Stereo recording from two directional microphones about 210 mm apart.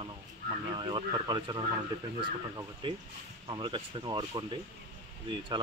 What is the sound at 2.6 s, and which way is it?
Speech, 20° right (ahead or behind).